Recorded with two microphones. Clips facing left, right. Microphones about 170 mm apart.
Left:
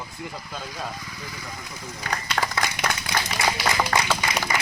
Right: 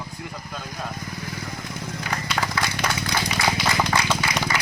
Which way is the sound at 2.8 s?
15° left (ahead or behind).